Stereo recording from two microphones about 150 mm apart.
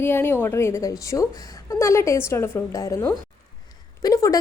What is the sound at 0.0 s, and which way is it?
A woman's voice, 15° left (ahead or behind).